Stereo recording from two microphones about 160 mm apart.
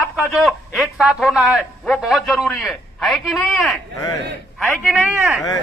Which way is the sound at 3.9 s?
20° left (ahead or behind).